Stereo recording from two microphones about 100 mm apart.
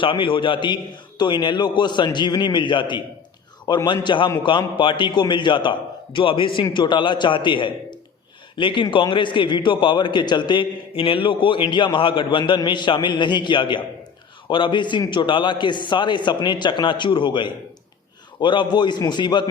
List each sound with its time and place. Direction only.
0.0 s a man's voice: 60° left (ahead or behind)